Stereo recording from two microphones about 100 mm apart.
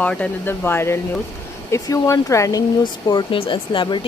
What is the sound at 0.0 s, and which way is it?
Speech, 15° left (ahead or behind).